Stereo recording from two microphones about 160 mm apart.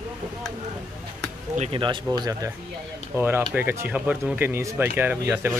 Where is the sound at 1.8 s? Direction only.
30° right (ahead or behind); by 5.6 s 10° right (ahead or behind).